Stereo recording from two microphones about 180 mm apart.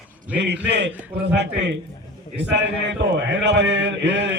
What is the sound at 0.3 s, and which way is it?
Speech, 75° right (ahead or behind).